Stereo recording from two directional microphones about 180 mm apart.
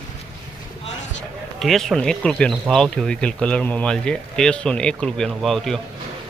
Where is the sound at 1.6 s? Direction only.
Centre (ahead or behind).